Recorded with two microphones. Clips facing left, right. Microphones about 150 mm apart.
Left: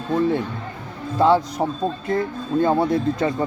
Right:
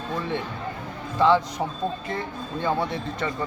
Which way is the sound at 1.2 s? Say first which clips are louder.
Left 3 dB; 40° left (ahead or behind).